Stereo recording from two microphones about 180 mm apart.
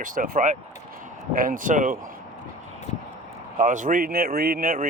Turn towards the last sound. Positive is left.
turn(degrees=-50)  # may be behind; listen again after turning